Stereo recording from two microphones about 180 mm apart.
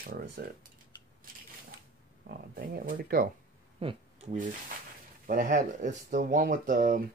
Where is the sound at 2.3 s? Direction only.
55° right (ahead or behind).